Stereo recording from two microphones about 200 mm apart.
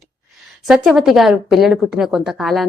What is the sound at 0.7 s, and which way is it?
Speech, centre (ahead or behind).